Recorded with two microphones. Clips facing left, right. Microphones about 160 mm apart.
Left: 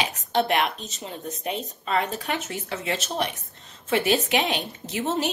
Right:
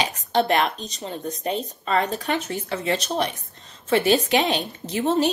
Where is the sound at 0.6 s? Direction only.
35° right (ahead or behind).